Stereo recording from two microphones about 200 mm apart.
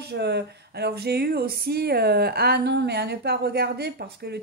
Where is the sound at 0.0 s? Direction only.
55° right (ahead or behind).